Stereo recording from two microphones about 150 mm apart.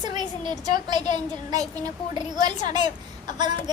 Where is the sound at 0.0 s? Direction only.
25° right (ahead or behind).